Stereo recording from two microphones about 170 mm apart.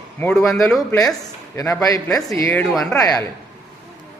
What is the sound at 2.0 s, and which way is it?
Speech, 5° left (ahead or behind).